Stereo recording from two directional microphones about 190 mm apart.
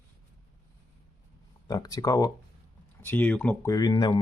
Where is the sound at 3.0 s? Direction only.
10° left (ahead or behind).